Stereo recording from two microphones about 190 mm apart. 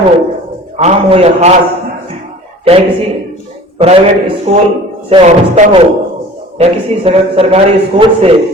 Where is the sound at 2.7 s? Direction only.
30° right (ahead or behind).